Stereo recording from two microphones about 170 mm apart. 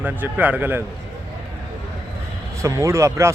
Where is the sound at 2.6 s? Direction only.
20° right (ahead or behind).